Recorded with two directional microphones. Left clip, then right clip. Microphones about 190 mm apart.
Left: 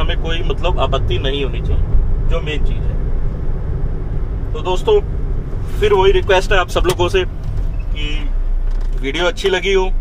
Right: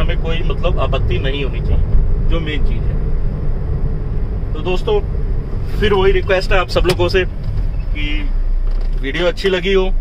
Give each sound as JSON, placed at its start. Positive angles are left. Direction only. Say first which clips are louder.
{"t": 0.0, "sound": "speech", "louder": "even", "side_deg": -15}
{"t": 4.7, "sound": "speech", "louder": "left 4 dB", "side_deg": -15}
{"t": 9.0, "sound": "speech", "louder": "even", "side_deg": -20}